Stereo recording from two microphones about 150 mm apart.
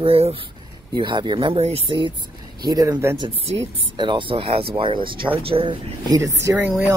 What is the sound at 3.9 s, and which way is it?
Speech, 30° right (ahead or behind).